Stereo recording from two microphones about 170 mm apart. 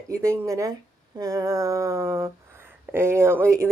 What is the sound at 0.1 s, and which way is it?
Speech, 15° right (ahead or behind).